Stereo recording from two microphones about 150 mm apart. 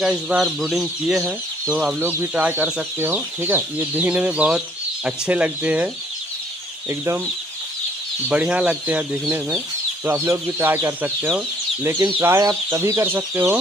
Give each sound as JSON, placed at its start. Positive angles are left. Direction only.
{"t": 0.0, "sound": "speech", "side_deg": -5}
{"t": 6.9, "sound": "speech", "side_deg": -20}
{"t": 8.3, "sound": "speech", "side_deg": -10}